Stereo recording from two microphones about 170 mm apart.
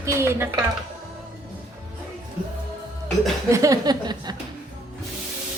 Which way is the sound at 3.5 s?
20° right (ahead or behind).